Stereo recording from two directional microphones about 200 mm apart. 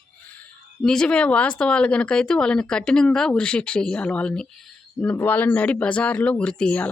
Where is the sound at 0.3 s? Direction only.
5° left (ahead or behind).